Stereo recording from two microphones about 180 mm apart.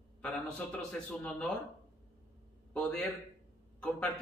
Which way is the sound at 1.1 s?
5° left (ahead or behind).